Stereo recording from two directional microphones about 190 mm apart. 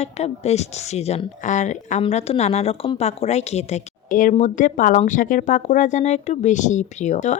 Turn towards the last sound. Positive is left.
turn(degrees=40)  # may be behind; listen again after turning